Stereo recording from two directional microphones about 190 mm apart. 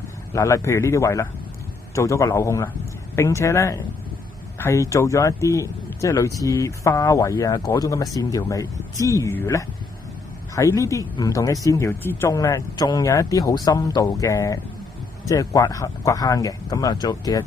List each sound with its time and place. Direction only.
0.3 s speech: 15° left (ahead or behind)